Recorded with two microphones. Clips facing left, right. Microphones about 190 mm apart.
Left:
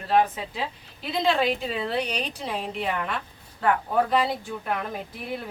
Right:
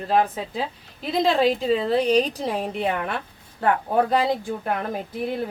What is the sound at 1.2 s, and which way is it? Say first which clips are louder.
A woman's voice: right 4 dB; 35° right (ahead or behind).